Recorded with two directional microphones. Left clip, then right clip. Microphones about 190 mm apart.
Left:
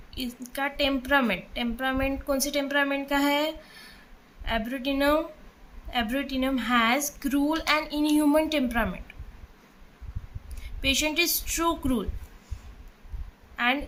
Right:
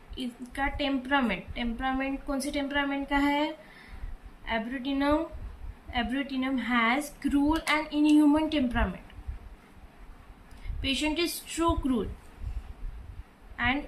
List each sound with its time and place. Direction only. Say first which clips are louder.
0.1 s a woman's voice: left 3 dB; 40° left (ahead or behind)
10.8 s a woman's voice: left 4 dB; 35° left (ahead or behind)
13.6 s a woman's voice: left 3 dB; 30° left (ahead or behind)